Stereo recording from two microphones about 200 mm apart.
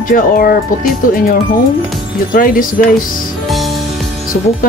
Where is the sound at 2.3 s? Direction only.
45° left (ahead or behind).